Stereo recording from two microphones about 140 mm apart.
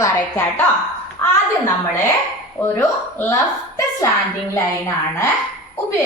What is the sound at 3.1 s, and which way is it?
Speech, 20° left (ahead or behind).